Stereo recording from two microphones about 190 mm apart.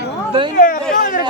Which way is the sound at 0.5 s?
40° left (ahead or behind).